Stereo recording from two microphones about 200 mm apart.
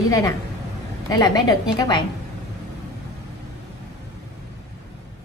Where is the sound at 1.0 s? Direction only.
20° left (ahead or behind).